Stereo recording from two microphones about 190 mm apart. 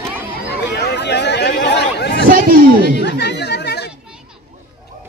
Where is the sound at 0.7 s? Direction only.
65° left (ahead or behind).